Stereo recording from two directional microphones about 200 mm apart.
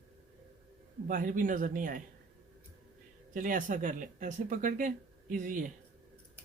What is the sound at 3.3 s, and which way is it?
Speech, 40° right (ahead or behind).